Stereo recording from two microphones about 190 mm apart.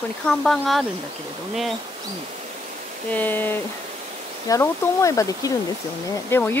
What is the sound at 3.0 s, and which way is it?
Speech, 10° left (ahead or behind).